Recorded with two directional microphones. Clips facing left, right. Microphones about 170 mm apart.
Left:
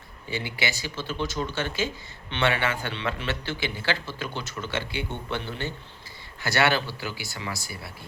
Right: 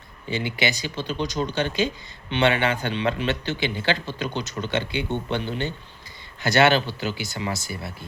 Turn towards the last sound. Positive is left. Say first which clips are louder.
# right 6 dB
turn(degrees=-20)  # may be behind; listen again after turning